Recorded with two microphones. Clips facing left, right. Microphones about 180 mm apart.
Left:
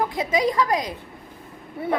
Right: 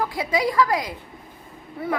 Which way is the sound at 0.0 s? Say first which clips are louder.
Left 1 dB; 20° left (ahead or behind).